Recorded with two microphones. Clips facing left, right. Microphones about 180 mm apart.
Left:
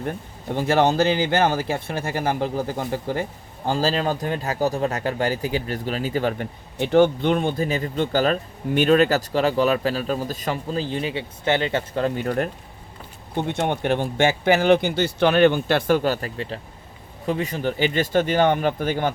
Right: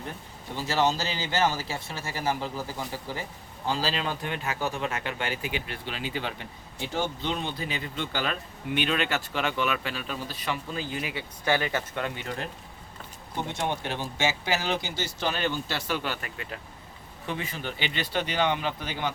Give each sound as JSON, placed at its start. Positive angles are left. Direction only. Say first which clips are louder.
{"t": 0.5, "sound": "speech", "louder": "left 7 dB", "side_deg": 55}
{"t": 6.7, "sound": "speech", "louder": "left 14 dB", "side_deg": 65}